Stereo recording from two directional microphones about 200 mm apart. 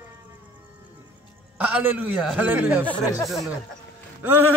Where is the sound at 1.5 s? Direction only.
5° right (ahead or behind).